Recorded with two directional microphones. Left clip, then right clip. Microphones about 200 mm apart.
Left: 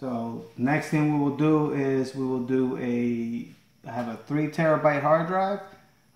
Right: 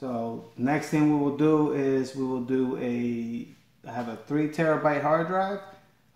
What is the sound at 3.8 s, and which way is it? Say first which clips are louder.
Speech: left 1 dB; 20° left (ahead or behind).